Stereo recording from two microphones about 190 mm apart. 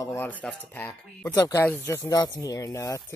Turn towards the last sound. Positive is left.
turn(degrees=15)  # may be behind; listen again after turning